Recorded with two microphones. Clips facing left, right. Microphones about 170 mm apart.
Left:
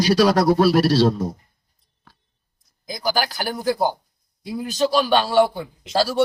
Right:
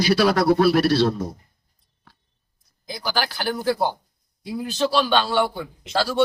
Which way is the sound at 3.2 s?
40° left (ahead or behind).